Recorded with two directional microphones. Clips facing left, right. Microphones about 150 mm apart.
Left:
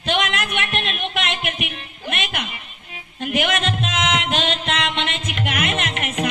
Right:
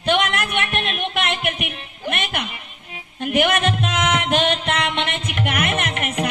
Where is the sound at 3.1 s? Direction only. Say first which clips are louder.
Right 3 dB; 55° right (ahead or behind).